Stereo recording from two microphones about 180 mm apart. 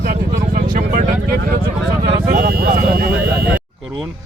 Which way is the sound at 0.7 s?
45° right (ahead or behind).